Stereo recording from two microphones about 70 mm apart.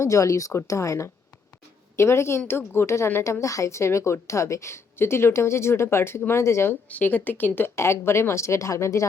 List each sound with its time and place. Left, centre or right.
0.0 s a woman's voice: left
6.8 s speech: left
7.8 s a woman's voice: left